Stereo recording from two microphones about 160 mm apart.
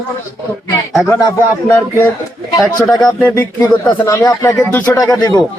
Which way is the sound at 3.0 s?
10° left (ahead or behind).